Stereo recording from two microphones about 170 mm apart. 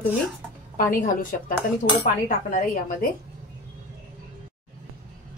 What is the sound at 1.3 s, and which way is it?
A woman's voice, 60° left (ahead or behind).